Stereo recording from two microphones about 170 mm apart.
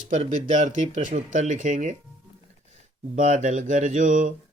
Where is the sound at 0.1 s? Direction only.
45° right (ahead or behind).